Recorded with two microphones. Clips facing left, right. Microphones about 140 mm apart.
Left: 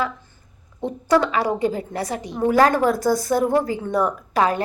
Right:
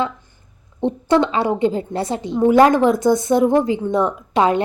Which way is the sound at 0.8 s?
25° right (ahead or behind).